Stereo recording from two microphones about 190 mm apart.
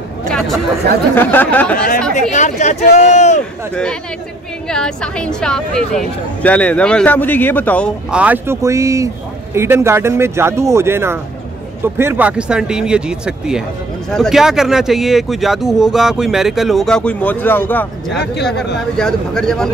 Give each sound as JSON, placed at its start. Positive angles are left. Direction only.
{"t": 0.3, "sound": "chatter", "side_deg": 0}
{"t": 1.1, "sound": "speech", "side_deg": 10}
{"t": 2.3, "sound": "speech", "side_deg": 40}
{"t": 3.7, "sound": "speech", "side_deg": 5}
{"t": 8.1, "sound": "a man's voice", "side_deg": -5}
{"t": 18.1, "sound": "speech", "side_deg": 60}
{"t": 18.9, "sound": "speech", "side_deg": 5}